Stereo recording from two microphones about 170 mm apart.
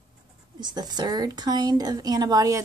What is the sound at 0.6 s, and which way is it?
A woman's voice, 25° right (ahead or behind).